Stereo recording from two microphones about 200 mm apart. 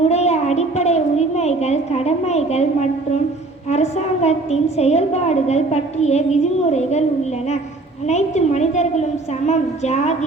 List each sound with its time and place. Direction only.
0.0 s a sound: 35° left (ahead or behind)
3.7 s a woman's voice: 35° left (ahead or behind)
8.0 s a woman's voice: 35° left (ahead or behind)